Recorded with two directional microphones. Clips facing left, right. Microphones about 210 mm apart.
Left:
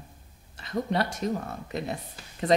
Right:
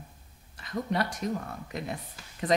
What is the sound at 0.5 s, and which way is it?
Speech, 30° left (ahead or behind).